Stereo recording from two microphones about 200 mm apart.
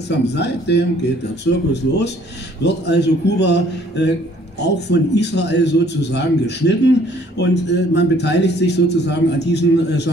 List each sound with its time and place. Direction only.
0.3 s a man's voice: 60° left (ahead or behind)